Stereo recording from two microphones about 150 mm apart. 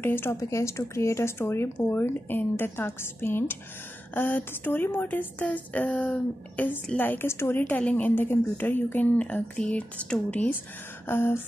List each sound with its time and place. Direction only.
0.0 s a woman's voice: 15° left (ahead or behind)